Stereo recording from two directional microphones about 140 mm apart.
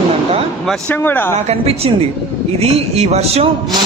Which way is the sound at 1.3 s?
50° right (ahead or behind).